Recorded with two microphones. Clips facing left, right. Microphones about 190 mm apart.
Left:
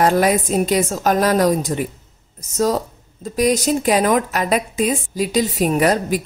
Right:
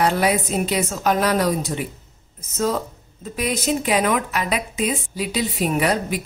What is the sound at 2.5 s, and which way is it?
A woman's voice, 40° left (ahead or behind).